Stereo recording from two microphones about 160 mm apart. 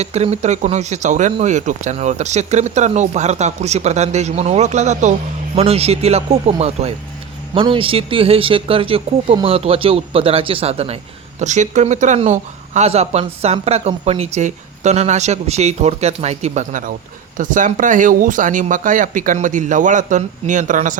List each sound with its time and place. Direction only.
0.0 s speech: 45° right (ahead or behind)